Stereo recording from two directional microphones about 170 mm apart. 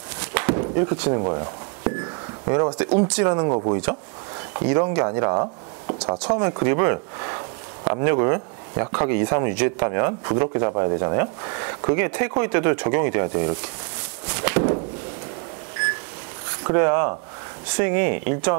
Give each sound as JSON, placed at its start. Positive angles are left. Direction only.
{"t": 0.3, "sound": "a sound", "side_deg": -10}
{"t": 1.1, "sound": "speech", "side_deg": -25}
{"t": 2.5, "sound": "speech", "side_deg": -20}
{"t": 4.6, "sound": "speech", "side_deg": -20}
{"t": 6.1, "sound": "speech", "side_deg": -30}
{"t": 6.4, "sound": "speech", "side_deg": -15}
{"t": 11.8, "sound": "speech", "side_deg": -15}
{"t": 14.3, "sound": "walk", "side_deg": -20}
{"t": 16.6, "sound": "speech", "side_deg": -15}